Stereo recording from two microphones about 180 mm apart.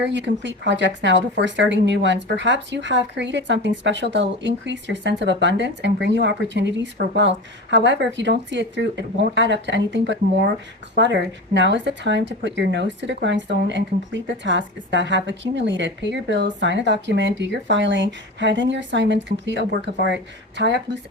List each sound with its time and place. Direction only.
0.0 s speech: 85° right